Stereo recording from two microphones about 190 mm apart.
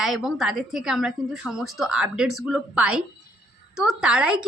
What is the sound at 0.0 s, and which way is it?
A woman's voice, centre (ahead or behind).